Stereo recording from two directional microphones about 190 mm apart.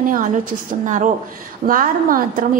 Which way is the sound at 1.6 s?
45° right (ahead or behind).